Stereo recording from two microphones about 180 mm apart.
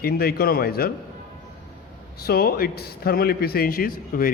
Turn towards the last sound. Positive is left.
turn(degrees=55)  # may be behind; listen again after turning